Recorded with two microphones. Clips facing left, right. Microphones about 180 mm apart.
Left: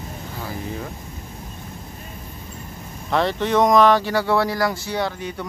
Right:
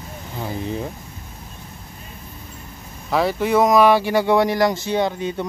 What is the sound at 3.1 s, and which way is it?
Speech, 5° right (ahead or behind).